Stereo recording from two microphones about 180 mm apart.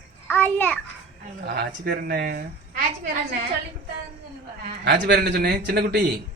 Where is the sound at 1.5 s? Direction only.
60° right (ahead or behind).